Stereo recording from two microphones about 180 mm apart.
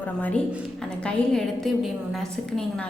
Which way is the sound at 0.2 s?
10° left (ahead or behind).